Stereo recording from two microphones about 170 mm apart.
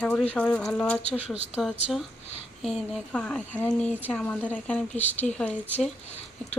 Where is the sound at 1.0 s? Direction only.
40° left (ahead or behind).